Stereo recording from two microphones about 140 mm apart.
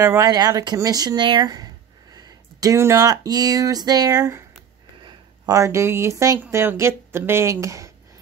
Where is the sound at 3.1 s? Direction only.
30° right (ahead or behind).